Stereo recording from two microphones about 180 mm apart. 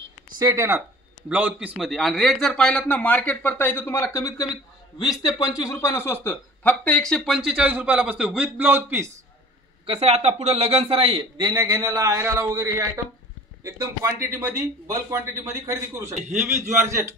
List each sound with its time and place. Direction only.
0.4 s a man's voice: 15° right (ahead or behind); by 4.5 s 20° left (ahead or behind)
5.6 s speech: 15° left (ahead or behind); by 9.1 s 10° right (ahead or behind)
9.8 s a man's voice: 35° right (ahead or behind); by 17.1 s 15° right (ahead or behind)